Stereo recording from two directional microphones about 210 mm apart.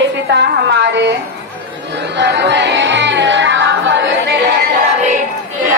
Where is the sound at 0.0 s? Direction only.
55° right (ahead or behind).